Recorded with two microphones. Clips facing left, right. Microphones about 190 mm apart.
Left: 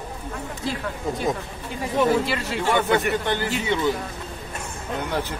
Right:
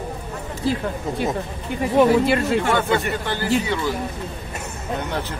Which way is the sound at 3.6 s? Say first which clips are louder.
Left 1 dB; 20° left (ahead or behind).